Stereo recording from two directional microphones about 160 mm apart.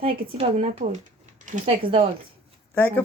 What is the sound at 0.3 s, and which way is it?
Speech, 35° right (ahead or behind).